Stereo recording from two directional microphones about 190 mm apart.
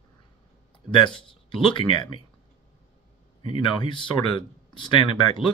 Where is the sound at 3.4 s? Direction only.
25° left (ahead or behind).